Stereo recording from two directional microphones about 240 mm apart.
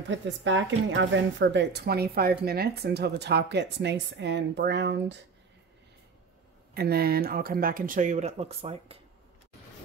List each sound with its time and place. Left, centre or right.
0.1 s speech: right
6.7 s speech: right